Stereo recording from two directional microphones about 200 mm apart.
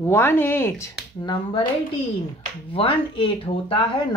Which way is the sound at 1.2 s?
25° left (ahead or behind).